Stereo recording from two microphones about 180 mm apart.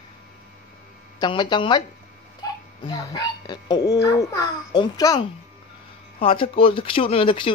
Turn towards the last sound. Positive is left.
turn(degrees=30)  # may be behind; listen again after turning